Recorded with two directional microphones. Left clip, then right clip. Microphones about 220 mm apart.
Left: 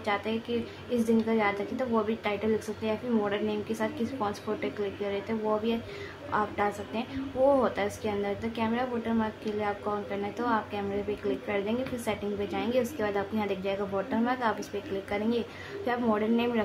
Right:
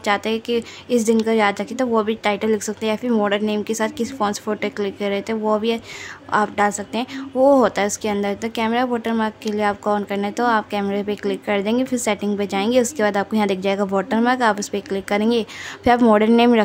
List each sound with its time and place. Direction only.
0.0 s a woman's voice: 50° right (ahead or behind)